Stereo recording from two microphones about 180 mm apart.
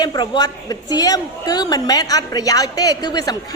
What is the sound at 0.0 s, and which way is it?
A woman's voice, 25° left (ahead or behind).